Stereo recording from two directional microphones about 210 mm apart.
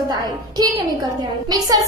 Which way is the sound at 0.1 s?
15° right (ahead or behind).